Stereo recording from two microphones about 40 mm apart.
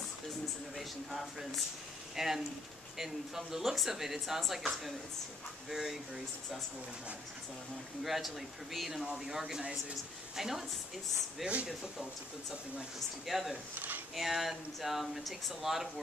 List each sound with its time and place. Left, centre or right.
0.7 s speech: centre
5.7 s speech: centre
8.0 s speech: centre
9.0 s speech: right
9.3 s speech: centre
11.4 s speech: right
13.3 s speech: centre
13.7 s a sound: right
14.1 s speech: centre